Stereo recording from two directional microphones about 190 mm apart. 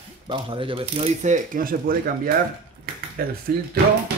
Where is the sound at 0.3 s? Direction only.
25° right (ahead or behind); by 3.3 s 50° right (ahead or behind).